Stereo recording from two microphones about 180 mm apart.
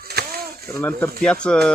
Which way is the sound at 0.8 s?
10° left (ahead or behind).